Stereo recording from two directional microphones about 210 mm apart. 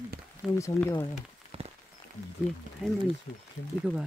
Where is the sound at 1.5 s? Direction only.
25° right (ahead or behind).